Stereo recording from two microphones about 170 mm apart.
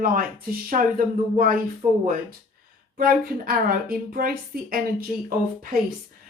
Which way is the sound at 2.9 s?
60° right (ahead or behind).